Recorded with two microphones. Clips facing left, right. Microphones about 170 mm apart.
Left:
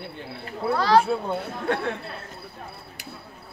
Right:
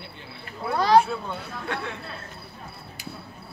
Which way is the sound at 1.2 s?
45° left (ahead or behind).